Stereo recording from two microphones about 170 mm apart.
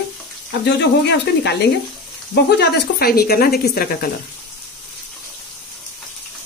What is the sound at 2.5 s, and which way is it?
Speech, 70° left (ahead or behind).